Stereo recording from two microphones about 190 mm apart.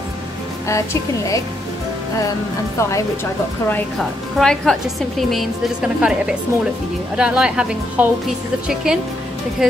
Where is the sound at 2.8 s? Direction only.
15° left (ahead or behind).